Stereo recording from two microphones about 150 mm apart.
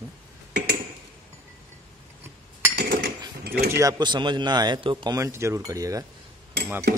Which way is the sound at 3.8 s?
30° right (ahead or behind).